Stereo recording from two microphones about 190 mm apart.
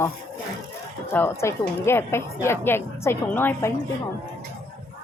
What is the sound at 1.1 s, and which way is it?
Speech, 10° left (ahead or behind).